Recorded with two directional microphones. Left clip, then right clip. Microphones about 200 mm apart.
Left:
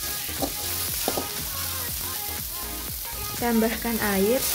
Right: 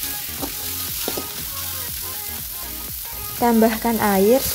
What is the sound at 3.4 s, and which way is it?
Frying, 20° right (ahead or behind).